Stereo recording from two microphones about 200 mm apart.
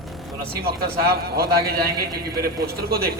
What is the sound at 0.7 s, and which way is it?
A man's voice, 50° right (ahead or behind).